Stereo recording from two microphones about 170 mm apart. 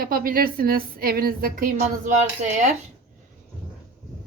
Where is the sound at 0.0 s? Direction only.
60° right (ahead or behind).